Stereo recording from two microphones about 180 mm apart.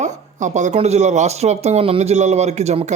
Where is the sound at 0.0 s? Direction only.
40° right (ahead or behind).